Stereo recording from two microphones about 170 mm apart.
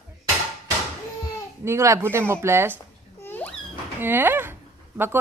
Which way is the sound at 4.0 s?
10° right (ahead or behind).